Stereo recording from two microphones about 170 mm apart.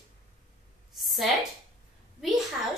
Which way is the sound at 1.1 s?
Centre (ahead or behind).